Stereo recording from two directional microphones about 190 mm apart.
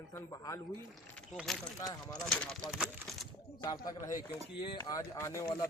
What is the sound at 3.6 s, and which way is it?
Speech, 15° left (ahead or behind).